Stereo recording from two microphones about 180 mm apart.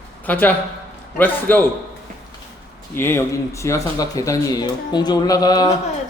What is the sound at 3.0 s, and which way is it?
Speech, 15° left (ahead or behind).